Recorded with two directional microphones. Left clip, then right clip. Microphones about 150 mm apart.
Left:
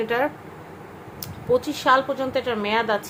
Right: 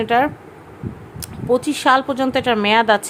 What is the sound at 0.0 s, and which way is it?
Speech, 45° right (ahead or behind).